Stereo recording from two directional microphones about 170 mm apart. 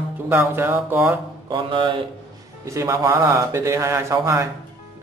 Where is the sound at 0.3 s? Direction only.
10° right (ahead or behind).